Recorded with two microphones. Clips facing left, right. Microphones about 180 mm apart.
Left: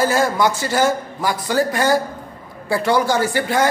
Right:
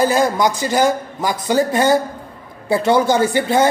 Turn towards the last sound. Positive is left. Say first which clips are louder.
# right 3 dB
turn(degrees=-20)  # may be behind; listen again after turning